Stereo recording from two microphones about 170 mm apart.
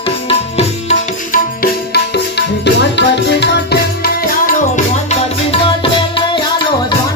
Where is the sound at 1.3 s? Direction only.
65° left (ahead or behind).